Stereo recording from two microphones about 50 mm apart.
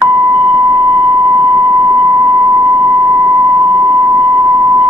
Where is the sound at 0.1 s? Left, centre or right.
Centre.